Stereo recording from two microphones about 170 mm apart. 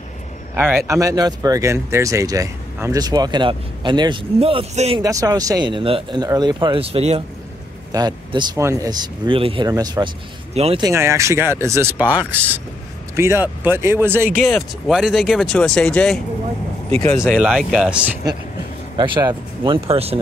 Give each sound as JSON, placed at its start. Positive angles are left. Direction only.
{"t": 0.6, "sound": "speech", "side_deg": -15}
{"t": 5.0, "sound": "speech", "side_deg": -20}
{"t": 7.9, "sound": "speech", "side_deg": -25}
{"t": 10.5, "sound": "speech", "side_deg": -35}
{"t": 10.8, "sound": "speech", "side_deg": -15}
{"t": 18.9, "sound": "speech", "side_deg": -25}